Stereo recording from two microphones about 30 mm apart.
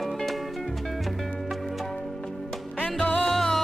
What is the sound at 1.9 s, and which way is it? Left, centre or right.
Music, centre.